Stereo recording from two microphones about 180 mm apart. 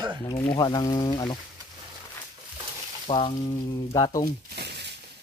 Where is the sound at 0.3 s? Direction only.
25° left (ahead or behind).